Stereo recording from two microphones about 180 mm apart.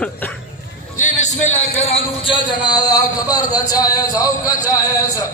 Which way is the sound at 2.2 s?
25° left (ahead or behind).